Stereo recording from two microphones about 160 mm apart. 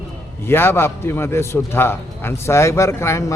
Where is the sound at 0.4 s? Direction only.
15° left (ahead or behind).